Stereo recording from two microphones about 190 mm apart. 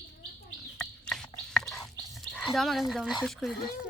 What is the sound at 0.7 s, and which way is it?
Bird, 5° left (ahead or behind).